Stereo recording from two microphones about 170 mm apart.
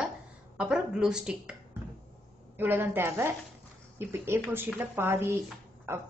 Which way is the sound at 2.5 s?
10° right (ahead or behind).